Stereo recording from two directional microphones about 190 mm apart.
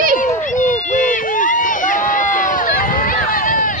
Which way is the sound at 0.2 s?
40° left (ahead or behind).